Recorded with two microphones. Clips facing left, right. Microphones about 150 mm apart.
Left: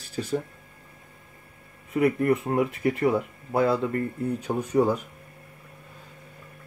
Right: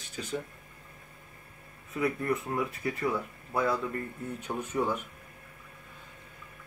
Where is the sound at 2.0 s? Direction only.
25° left (ahead or behind).